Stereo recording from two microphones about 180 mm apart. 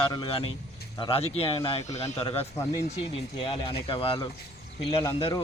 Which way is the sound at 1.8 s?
20° left (ahead or behind).